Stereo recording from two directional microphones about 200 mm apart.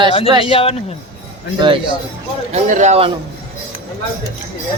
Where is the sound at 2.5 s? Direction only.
35° right (ahead or behind).